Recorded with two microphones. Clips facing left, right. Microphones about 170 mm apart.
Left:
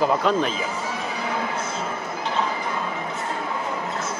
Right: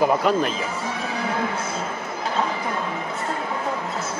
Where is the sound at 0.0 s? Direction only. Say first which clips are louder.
Right 1 dB; 5° right (ahead or behind).